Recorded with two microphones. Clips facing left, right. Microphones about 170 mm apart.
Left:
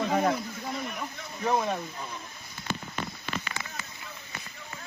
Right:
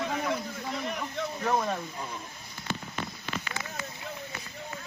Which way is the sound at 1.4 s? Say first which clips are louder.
Left 2 dB; 5° left (ahead or behind).